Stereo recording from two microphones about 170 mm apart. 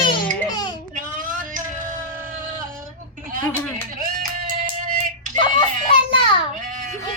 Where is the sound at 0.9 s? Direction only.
50° right (ahead or behind).